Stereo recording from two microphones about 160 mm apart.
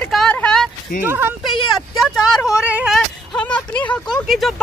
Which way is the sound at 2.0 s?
Centre (ahead or behind).